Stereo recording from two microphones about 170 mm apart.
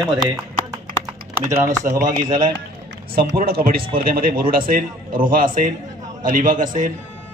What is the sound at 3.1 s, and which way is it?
Speech, 65° right (ahead or behind).